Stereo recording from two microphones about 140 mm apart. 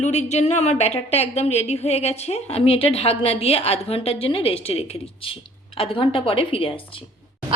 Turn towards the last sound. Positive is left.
turn(degrees=40)  # may be behind; listen again after turning